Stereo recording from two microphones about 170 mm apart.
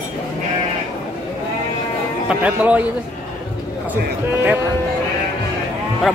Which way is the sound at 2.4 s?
10° right (ahead or behind).